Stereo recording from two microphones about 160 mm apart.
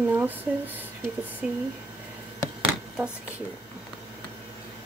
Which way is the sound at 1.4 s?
10° right (ahead or behind).